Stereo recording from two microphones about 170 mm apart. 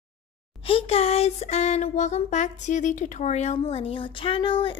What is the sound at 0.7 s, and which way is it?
Speech, 35° left (ahead or behind).